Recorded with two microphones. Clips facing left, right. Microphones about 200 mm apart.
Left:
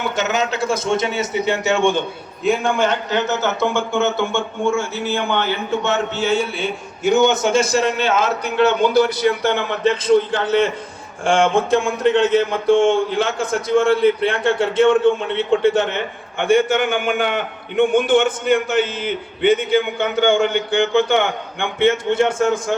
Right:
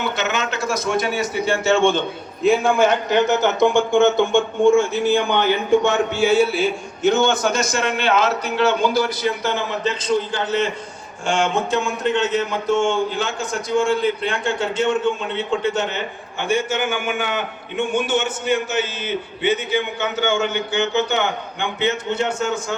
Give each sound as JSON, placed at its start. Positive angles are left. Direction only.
{"t": 0.2, "sound": "a man's voice", "side_deg": 40}
{"t": 2.4, "sound": "a man's voice", "side_deg": -5}
{"t": 7.0, "sound": "a man's voice", "side_deg": 15}
{"t": 20.0, "sound": "a man's voice", "side_deg": 55}